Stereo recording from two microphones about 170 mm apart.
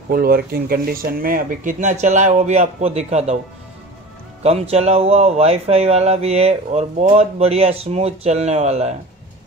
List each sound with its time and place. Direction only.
0.1 s speech: 65° right (ahead or behind); by 3.3 s 40° right (ahead or behind)
4.4 s speech: 40° right (ahead or behind)